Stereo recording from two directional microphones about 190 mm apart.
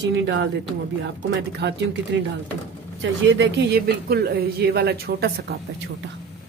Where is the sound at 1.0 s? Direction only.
65° right (ahead or behind).